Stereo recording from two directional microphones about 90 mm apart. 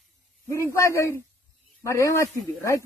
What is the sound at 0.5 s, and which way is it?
A man's voice, 35° left (ahead or behind).